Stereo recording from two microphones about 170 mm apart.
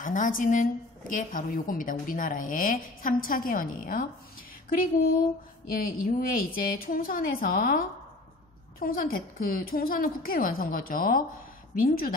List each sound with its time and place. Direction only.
0.0 s a woman's voice: 50° left (ahead or behind)